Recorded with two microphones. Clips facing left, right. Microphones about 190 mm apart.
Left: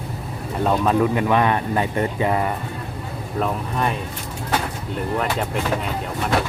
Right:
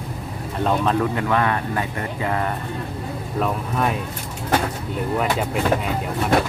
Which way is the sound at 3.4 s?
Centre (ahead or behind).